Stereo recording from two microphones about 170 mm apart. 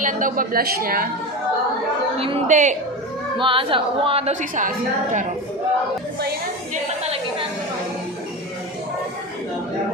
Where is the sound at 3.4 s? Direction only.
30° right (ahead or behind); by 5.3 s 50° right (ahead or behind).